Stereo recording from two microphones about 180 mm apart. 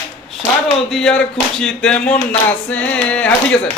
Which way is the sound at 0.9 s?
5° left (ahead or behind).